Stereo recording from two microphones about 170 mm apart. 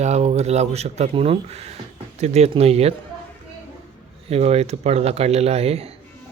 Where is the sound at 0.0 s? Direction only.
40° right (ahead or behind).